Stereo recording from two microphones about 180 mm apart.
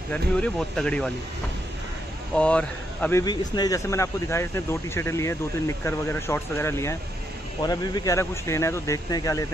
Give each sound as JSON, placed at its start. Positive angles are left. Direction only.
{"t": 0.1, "sound": "speech", "side_deg": 5}
{"t": 2.3, "sound": "speech", "side_deg": 5}